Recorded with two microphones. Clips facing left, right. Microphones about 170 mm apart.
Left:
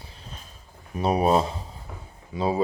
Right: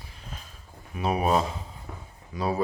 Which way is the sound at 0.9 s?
35° left (ahead or behind).